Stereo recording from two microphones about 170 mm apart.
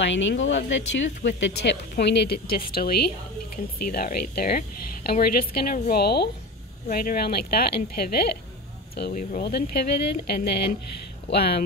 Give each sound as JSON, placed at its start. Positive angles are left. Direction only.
{"t": 0.0, "sound": "a woman's voice", "side_deg": 90}
{"t": 9.4, "sound": "speech", "side_deg": 75}